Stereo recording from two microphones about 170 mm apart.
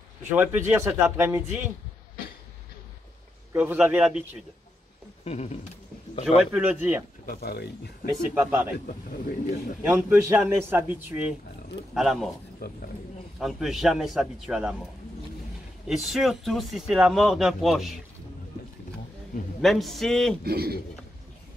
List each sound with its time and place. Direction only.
0.3 s speech: 10° right (ahead or behind)
3.5 s speech: 10° right (ahead or behind)
5.2 s a sound: 40° left (ahead or behind)
6.2 s speech: 5° right (ahead or behind)
7.2 s speech: 70° left (ahead or behind)
8.1 s speech: 15° right (ahead or behind)
9.9 s speech: 10° right (ahead or behind)
12.6 s speech: 70° left (ahead or behind)
13.4 s speech: centre (ahead or behind)
15.9 s speech: centre (ahead or behind)
19.6 s speech: centre (ahead or behind)
20.4 s a man's voice: 65° right (ahead or behind)